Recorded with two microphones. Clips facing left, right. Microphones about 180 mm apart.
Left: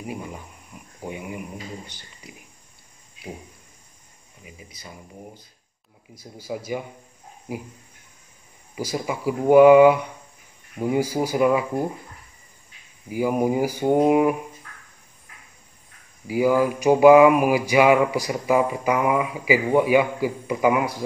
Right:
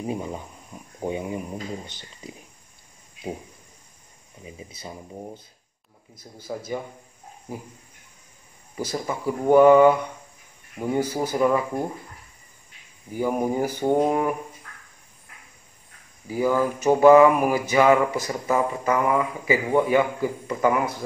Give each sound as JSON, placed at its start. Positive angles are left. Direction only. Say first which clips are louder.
{"t": 0.0, "sound": "speech", "louder": "right 4 dB", "side_deg": -25}
{"t": 4.5, "sound": "speech", "louder": "right 5 dB", "side_deg": -25}
{"t": 6.1, "sound": "mantra", "louder": "left 2 dB", "side_deg": 10}
{"t": 8.7, "sound": "mantra", "louder": "left 1 dB", "side_deg": 10}
{"t": 13.1, "sound": "mantra", "louder": "left 2 dB", "side_deg": 10}
{"t": 16.3, "sound": "mantra", "louder": "left 3 dB", "side_deg": 10}